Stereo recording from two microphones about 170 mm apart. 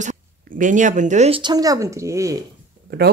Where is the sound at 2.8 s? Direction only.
75° right (ahead or behind).